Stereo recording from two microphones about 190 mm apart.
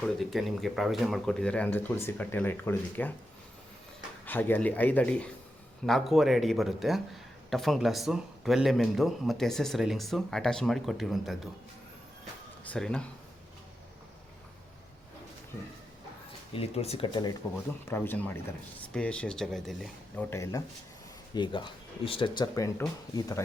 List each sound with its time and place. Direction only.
0.0 s speech: centre (ahead or behind)
4.3 s a man's voice: 10° left (ahead or behind)
12.6 s speech: 5° left (ahead or behind)
16.5 s speech: 30° left (ahead or behind)
17.8 s a man's voice: 10° left (ahead or behind)
20.3 s a man's voice: 15° left (ahead or behind)